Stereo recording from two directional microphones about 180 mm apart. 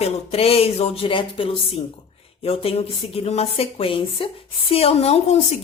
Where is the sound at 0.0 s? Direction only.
35° left (ahead or behind).